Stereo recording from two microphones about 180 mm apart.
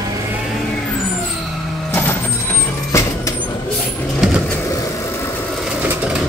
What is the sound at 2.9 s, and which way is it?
Vehicle, 15° left (ahead or behind).